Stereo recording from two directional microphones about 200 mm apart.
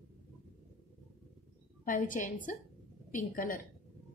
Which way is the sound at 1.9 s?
40° left (ahead or behind).